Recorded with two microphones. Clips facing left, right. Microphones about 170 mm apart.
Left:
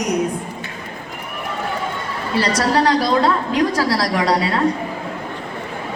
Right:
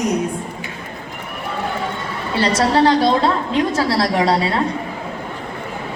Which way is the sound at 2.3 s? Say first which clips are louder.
Right 2 dB; 25° right (ahead or behind).